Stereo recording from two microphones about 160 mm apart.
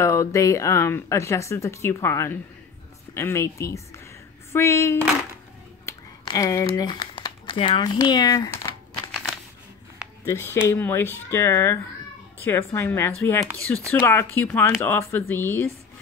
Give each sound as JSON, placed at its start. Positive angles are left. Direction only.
{"t": 0.0, "sound": "speech", "side_deg": 20}
{"t": 5.9, "sound": "finger snapping", "side_deg": 20}
{"t": 6.7, "sound": "speech", "side_deg": 25}
{"t": 10.2, "sound": "speech", "side_deg": 15}